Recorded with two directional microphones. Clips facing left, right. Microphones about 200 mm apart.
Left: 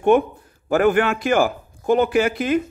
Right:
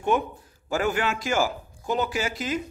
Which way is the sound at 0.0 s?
55° left (ahead or behind).